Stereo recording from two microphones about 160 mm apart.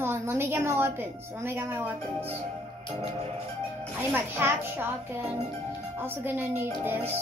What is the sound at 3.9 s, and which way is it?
A woman's voice, 15° right (ahead or behind).